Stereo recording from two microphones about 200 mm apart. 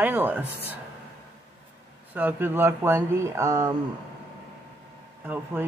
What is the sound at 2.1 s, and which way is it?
Speech, 10° right (ahead or behind).